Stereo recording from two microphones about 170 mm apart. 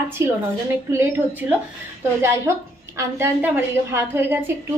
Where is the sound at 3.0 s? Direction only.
15° right (ahead or behind).